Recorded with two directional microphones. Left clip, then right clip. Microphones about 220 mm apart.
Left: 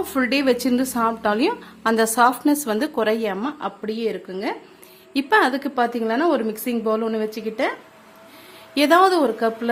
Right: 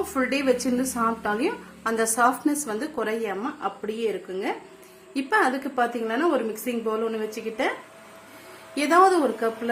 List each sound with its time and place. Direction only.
0.1 s a woman's voice: 50° left (ahead or behind)
2.4 s a woman's voice: 90° left
2.6 s a woman's voice: 50° left (ahead or behind)
8.7 s a woman's voice: 50° left (ahead or behind)